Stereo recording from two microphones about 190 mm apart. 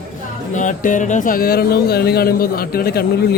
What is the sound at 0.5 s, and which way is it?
Speech, 45° left (ahead or behind).